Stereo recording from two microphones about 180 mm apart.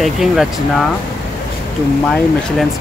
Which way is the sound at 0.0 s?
Centre (ahead or behind).